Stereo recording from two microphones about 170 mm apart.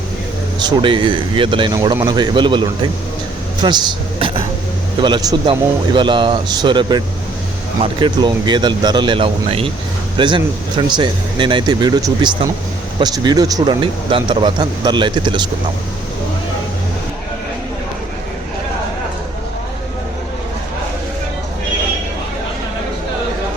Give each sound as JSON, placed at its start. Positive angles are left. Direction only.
{"t": 0.6, "sound": "speech", "side_deg": -30}
{"t": 4.9, "sound": "speech", "side_deg": -25}